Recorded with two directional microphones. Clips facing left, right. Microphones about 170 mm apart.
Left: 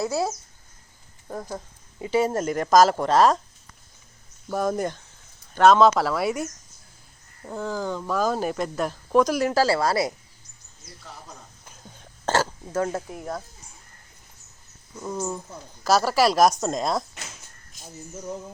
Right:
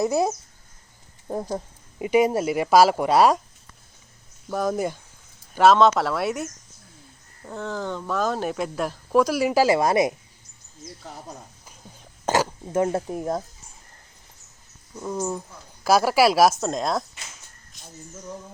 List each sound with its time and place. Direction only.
0.0 s speech: 20° right (ahead or behind)
4.4 s speech: centre (ahead or behind); by 10.2 s 20° right (ahead or behind)
11.6 s whispering: 5° right (ahead or behind)
12.2 s burping: 15° right (ahead or behind)
13.1 s speech: 35° right (ahead or behind)
15.0 s speech: 10° right (ahead or behind)